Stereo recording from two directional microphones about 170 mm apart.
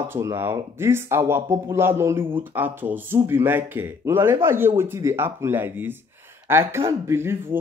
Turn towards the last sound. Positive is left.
turn(degrees=-15)  # may be behind; listen again after turning